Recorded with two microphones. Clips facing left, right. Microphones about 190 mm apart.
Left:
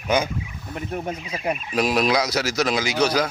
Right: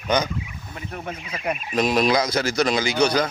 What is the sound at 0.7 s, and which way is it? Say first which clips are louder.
Speech: left 5 dB; 20° left (ahead or behind).